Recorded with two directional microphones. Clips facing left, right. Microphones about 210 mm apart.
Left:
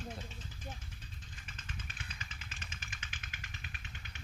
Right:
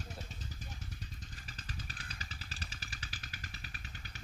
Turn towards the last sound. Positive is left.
turn(degrees=-35)  # may be behind; listen again after turning